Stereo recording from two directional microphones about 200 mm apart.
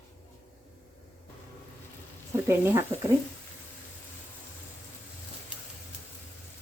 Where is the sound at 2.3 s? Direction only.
10° right (ahead or behind).